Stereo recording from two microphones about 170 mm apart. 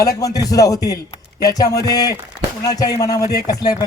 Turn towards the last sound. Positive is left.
turn(degrees=20)  # may be behind; listen again after turning